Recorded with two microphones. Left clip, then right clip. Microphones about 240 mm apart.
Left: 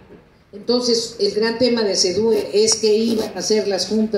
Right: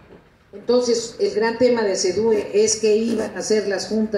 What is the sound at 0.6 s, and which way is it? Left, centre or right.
Speech, left.